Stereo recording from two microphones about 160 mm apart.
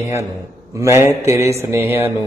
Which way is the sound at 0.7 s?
15° right (ahead or behind).